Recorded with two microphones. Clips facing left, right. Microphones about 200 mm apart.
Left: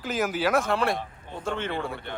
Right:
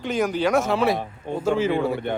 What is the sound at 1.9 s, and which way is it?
Speech, 55° right (ahead or behind).